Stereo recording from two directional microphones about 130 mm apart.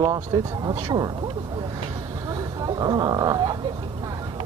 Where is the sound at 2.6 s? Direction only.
30° right (ahead or behind).